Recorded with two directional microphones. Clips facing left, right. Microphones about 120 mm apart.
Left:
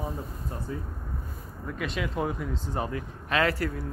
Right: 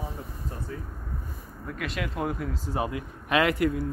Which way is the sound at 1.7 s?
Centre (ahead or behind).